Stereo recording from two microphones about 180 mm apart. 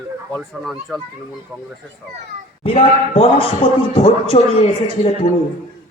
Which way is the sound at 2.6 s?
30° left (ahead or behind).